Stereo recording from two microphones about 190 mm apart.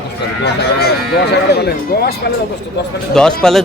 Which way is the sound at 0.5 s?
55° left (ahead or behind).